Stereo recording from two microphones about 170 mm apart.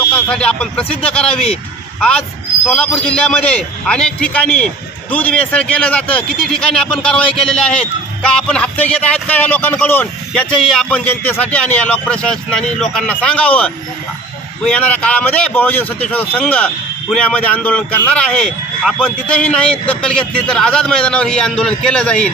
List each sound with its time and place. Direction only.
0.1 s a man's voice: 5° left (ahead or behind)